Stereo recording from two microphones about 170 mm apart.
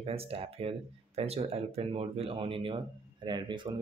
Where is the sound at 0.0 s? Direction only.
35° right (ahead or behind).